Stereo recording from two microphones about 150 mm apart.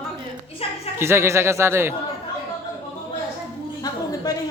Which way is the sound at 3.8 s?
25° left (ahead or behind).